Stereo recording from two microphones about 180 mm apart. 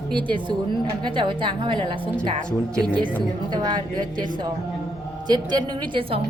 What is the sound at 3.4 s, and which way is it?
A woman's voice, 25° right (ahead or behind).